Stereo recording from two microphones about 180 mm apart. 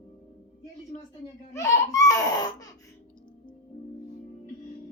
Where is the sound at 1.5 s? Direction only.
15° left (ahead or behind).